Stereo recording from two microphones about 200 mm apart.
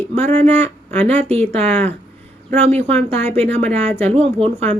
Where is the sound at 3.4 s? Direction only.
30° right (ahead or behind).